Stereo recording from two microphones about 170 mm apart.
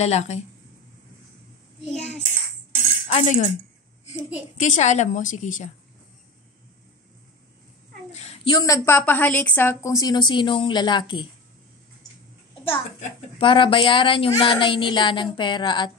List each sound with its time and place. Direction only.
0.0 s a child's voice: 40° left (ahead or behind)
3.1 s a woman's voice: 45° left (ahead or behind)
8.1 s a sound: 40° left (ahead or behind)
8.5 s a woman's voice: 20° left (ahead or behind)
12.7 s a child's voice: 30° left (ahead or behind)